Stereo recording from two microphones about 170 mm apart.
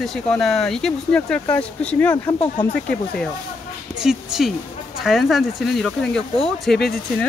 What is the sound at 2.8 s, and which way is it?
Speech, 5° left (ahead or behind).